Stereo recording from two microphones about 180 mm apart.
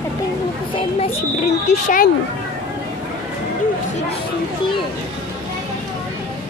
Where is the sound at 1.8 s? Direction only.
50° left (ahead or behind).